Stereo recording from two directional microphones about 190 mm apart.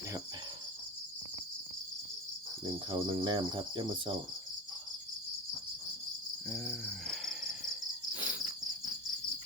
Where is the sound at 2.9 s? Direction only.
25° right (ahead or behind).